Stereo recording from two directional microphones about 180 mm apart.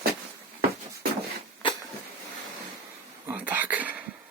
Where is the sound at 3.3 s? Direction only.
10° right (ahead or behind).